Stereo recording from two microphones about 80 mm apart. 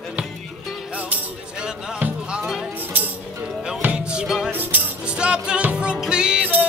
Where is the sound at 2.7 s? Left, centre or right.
Right.